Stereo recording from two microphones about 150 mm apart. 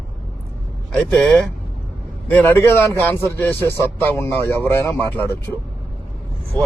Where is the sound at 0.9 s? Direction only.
10° left (ahead or behind).